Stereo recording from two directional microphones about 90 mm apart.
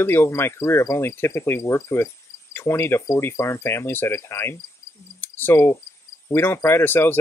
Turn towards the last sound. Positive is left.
turn(degrees=25)  # may be behind; listen again after turning